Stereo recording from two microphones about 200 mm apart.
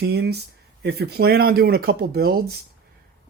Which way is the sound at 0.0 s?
55° right (ahead or behind).